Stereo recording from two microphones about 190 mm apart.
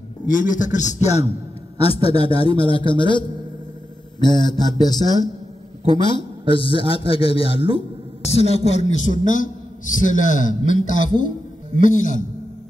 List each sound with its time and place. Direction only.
0.3 s a man's voice: 45° left (ahead or behind)